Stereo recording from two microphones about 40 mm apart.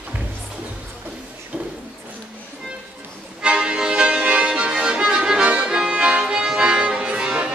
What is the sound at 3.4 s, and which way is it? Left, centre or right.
Music, right.